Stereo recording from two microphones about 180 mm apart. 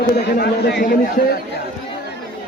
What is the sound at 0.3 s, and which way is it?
A man's voice, 65° left (ahead or behind).